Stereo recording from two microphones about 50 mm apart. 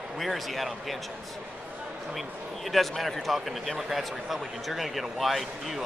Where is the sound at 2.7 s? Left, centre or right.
Centre.